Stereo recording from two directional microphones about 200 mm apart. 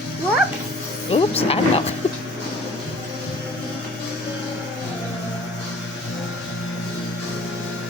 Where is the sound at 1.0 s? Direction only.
30° left (ahead or behind).